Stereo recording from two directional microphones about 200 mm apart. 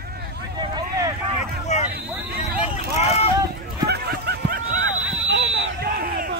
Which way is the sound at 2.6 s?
30° left (ahead or behind).